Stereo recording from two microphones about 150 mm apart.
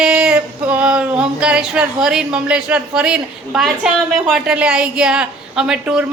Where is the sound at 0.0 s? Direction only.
5° right (ahead or behind).